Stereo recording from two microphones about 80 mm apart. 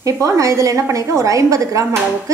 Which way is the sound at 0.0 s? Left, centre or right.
Right.